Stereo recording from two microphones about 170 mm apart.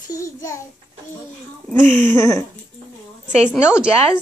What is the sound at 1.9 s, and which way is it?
Speech, 10° left (ahead or behind).